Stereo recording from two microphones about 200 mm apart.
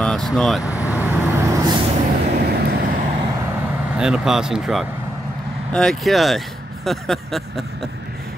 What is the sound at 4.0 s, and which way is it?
Speech, 5° right (ahead or behind).